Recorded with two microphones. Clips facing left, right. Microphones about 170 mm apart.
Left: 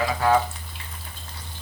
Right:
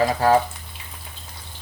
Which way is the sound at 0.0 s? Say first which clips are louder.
Right 4 dB; 35° right (ahead or behind).